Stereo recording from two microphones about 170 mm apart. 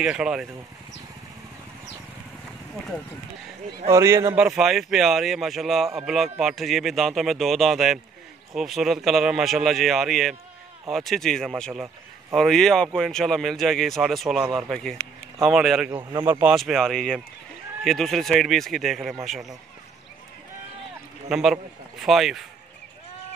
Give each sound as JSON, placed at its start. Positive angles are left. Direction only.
{"t": 0.0, "sound": "speech", "side_deg": -5}
{"t": 3.9, "sound": "speech", "side_deg": -15}
{"t": 15.9, "sound": "speech", "side_deg": -25}
{"t": 16.3, "sound": "speech", "side_deg": -10}
{"t": 16.5, "sound": "speech", "side_deg": 0}
{"t": 21.3, "sound": "speech", "side_deg": 0}